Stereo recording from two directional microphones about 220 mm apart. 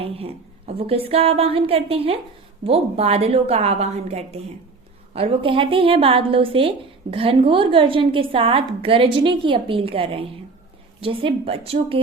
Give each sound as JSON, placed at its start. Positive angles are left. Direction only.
{"t": 0.0, "sound": "a woman's voice", "side_deg": -25}